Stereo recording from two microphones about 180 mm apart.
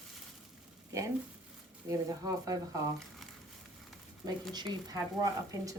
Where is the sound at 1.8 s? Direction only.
20° right (ahead or behind).